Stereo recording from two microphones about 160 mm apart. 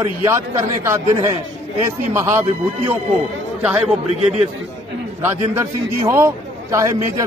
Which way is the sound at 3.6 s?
5° right (ahead or behind).